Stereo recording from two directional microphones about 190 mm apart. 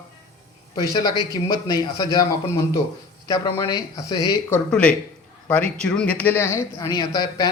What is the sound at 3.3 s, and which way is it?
Speech, 20° left (ahead or behind).